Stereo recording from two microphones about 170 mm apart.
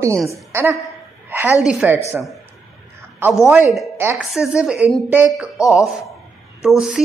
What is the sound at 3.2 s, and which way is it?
Speech, 10° right (ahead or behind).